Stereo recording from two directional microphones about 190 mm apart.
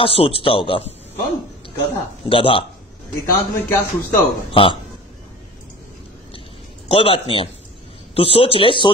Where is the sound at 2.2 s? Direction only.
30° left (ahead or behind).